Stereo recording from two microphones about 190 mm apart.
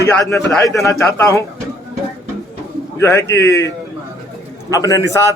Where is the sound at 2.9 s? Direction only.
15° left (ahead or behind).